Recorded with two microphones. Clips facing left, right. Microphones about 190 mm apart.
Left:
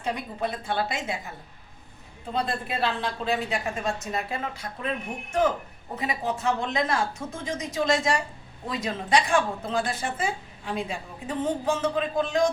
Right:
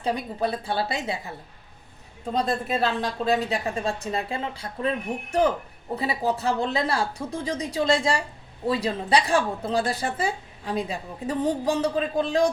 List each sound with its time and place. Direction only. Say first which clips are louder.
0.0 s a woman's voice: right 3 dB; 35° right (ahead or behind)
2.3 s a woman's voice: right 4 dB; 40° right (ahead or behind)
6.0 s a woman's voice: right 3 dB; 35° right (ahead or behind)